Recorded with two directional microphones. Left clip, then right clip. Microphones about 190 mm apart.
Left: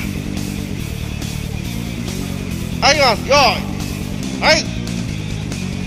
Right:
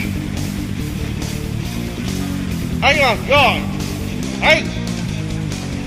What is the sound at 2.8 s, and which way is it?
Speech, 15° left (ahead or behind).